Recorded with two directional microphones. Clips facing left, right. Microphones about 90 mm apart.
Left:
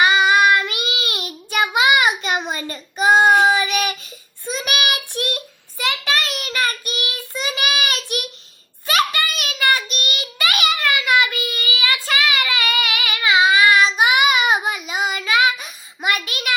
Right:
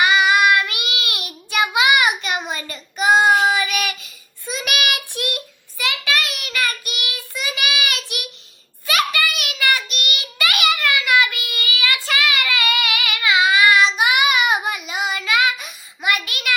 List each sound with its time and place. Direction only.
0.0 s child singing: 25° left (ahead or behind)
8.9 s a sound: 30° left (ahead or behind)
9.4 s child singing: 25° left (ahead or behind)